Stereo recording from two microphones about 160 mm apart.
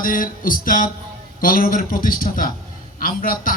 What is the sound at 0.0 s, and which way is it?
Speech, 60° left (ahead or behind).